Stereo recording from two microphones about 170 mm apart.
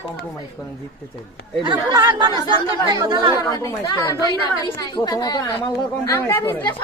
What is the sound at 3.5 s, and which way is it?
Speech, 20° left (ahead or behind).